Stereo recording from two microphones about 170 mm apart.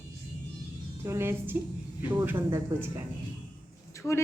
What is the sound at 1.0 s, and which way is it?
A woman's voice, 15° right (ahead or behind).